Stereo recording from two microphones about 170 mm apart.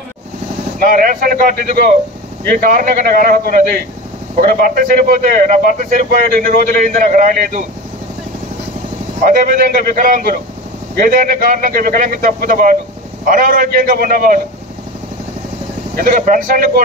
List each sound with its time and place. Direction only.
0.7 s a man's voice: 55° right (ahead or behind)
9.2 s a man's voice: 55° right (ahead or behind)
16.0 s a man's voice: 50° right (ahead or behind)